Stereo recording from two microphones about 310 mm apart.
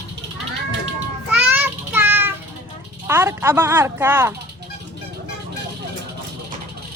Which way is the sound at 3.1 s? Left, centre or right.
Centre.